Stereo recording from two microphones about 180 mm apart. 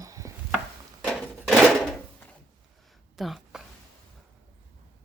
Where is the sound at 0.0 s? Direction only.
20° right (ahead or behind).